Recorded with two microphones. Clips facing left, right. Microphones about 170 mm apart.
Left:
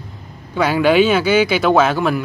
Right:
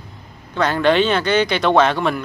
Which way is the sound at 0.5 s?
10° left (ahead or behind).